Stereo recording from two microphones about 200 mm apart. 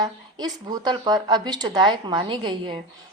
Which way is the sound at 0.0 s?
20° right (ahead or behind).